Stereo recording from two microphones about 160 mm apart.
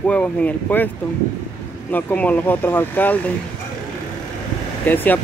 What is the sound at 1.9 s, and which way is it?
Speech, 10° left (ahead or behind).